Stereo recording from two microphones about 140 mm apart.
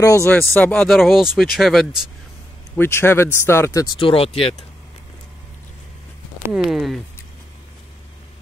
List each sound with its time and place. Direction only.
0.0 s speech: 20° left (ahead or behind)
0.9 s speech: centre (ahead or behind)
2.7 s speech: 15° left (ahead or behind)
4.0 s speech: 45° left (ahead or behind)
6.6 s speech: centre (ahead or behind)